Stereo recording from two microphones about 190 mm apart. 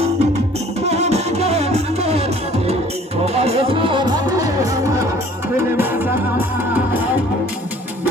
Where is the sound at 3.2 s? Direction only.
35° right (ahead or behind); by 7.0 s 10° right (ahead or behind).